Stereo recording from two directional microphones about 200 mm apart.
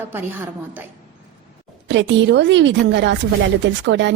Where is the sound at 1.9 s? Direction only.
65° right (ahead or behind).